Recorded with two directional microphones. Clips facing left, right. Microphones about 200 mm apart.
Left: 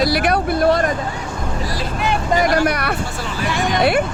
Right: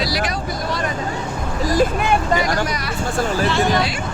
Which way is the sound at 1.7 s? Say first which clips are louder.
Right 9 dB; 50° right (ahead or behind).